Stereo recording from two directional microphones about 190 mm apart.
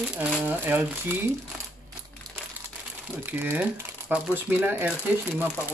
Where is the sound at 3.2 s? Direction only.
10° right (ahead or behind).